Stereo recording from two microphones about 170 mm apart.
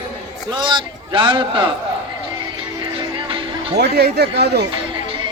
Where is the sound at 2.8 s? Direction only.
30° right (ahead or behind).